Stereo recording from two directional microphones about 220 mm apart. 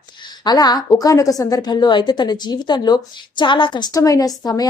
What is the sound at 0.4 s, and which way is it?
A woman's voice, 20° left (ahead or behind).